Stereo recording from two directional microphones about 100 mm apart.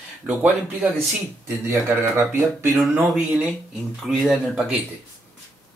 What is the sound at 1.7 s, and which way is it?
Speech, 30° right (ahead or behind).